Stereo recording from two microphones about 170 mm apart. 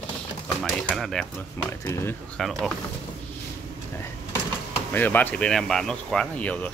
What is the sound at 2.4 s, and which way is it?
Speech, centre (ahead or behind).